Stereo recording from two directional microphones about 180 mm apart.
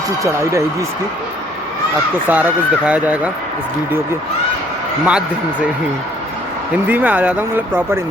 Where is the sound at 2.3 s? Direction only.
10° right (ahead or behind).